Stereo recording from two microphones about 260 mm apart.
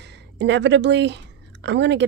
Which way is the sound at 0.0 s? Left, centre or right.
Right.